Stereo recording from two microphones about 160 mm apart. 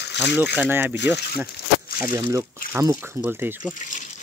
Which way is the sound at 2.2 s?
15° right (ahead or behind).